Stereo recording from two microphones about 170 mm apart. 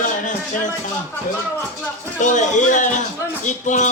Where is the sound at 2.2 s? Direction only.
45° left (ahead or behind).